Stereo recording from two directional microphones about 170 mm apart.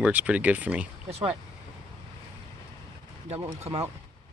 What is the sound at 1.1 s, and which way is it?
Speech, 35° right (ahead or behind).